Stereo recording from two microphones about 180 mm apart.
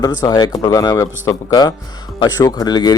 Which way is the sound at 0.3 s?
20° left (ahead or behind).